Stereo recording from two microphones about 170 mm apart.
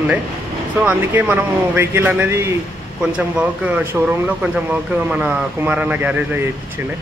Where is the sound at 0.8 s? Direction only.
10° right (ahead or behind).